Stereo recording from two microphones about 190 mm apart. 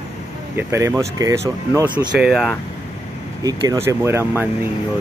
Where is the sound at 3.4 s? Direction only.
15° right (ahead or behind).